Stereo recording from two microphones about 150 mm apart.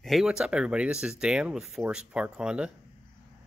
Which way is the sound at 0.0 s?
Centre (ahead or behind).